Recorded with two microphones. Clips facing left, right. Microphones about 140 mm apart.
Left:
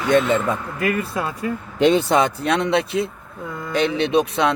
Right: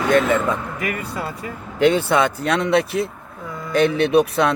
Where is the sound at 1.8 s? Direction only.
20° left (ahead or behind).